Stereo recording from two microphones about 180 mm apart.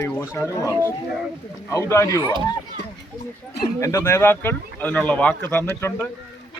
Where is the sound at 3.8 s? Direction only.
15° left (ahead or behind).